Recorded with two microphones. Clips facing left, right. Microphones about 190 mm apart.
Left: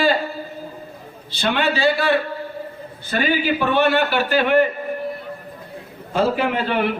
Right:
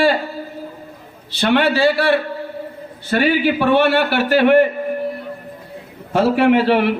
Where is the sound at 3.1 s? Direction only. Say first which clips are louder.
Right 5 dB; 60° right (ahead or behind).